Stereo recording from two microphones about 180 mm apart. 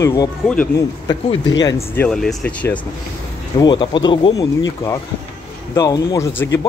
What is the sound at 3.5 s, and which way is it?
Speech, 25° left (ahead or behind).